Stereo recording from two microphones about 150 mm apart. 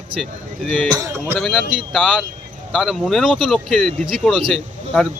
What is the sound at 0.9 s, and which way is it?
Speech, 25° right (ahead or behind).